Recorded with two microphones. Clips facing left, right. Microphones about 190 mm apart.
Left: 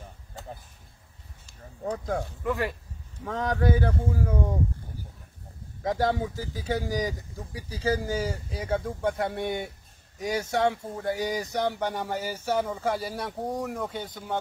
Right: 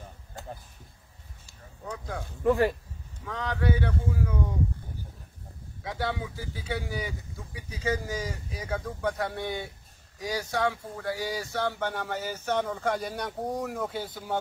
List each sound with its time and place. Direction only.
1.9 s speech: 45° left (ahead or behind)
2.4 s speech: 35° right (ahead or behind)
3.3 s speech: 45° left (ahead or behind)
5.8 s speech: 45° left (ahead or behind); by 14.4 s 5° right (ahead or behind)